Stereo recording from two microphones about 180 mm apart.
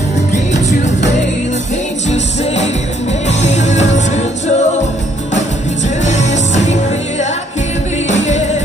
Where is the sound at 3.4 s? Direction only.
40° left (ahead or behind).